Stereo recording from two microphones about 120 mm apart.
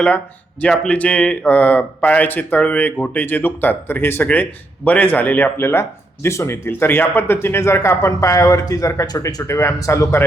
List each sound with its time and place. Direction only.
0.6 s speech: 10° left (ahead or behind)